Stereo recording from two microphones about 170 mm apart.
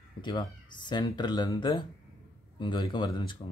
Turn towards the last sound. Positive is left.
turn(degrees=25)  # may be behind; listen again after turning